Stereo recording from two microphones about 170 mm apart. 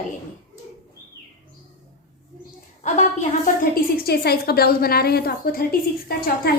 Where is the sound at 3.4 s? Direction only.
60° left (ahead or behind).